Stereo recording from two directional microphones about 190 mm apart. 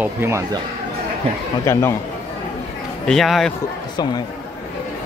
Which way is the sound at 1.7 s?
15° left (ahead or behind).